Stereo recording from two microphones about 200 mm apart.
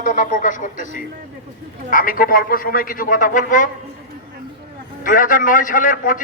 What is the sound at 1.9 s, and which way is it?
A man's voice, 45° left (ahead or behind).